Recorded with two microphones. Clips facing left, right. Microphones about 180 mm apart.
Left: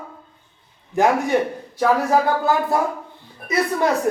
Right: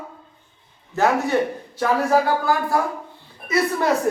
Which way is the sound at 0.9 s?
15° left (ahead or behind).